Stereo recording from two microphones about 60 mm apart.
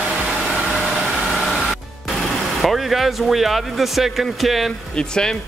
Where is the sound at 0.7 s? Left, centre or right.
Centre.